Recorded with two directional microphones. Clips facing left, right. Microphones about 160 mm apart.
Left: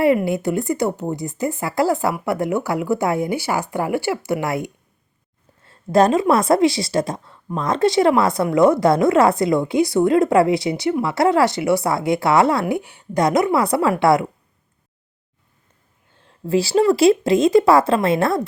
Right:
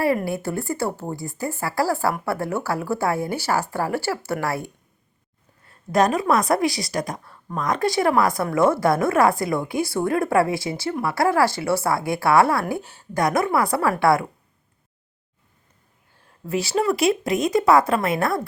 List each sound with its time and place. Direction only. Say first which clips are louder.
0.3 s speech: left 5 dB; 15° left (ahead or behind)
16.2 s speech: left 6 dB; 30° left (ahead or behind)